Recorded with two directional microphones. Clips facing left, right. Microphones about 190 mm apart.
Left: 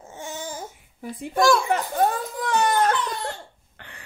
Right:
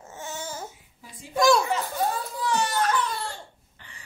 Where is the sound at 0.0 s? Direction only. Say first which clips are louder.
Left 2 dB; 15° left (ahead or behind).